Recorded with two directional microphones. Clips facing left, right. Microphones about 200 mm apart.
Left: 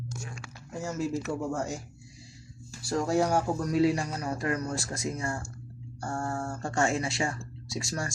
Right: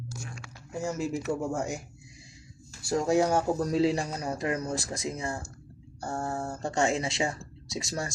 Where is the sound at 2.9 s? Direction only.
20° right (ahead or behind).